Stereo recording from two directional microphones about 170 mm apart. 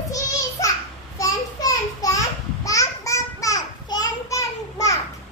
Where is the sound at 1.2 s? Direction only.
20° left (ahead or behind).